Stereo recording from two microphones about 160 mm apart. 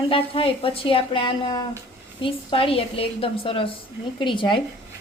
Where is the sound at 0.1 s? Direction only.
35° left (ahead or behind).